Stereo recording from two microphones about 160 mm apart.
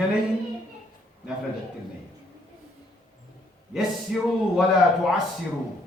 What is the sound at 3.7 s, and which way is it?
Speech, centre (ahead or behind).